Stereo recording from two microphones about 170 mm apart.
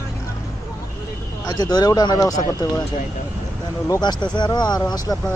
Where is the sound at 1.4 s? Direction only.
25° left (ahead or behind).